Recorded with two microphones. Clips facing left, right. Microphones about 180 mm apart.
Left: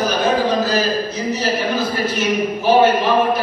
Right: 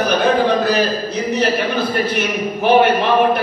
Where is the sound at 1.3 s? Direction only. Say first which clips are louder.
Right 3 dB; 60° right (ahead or behind).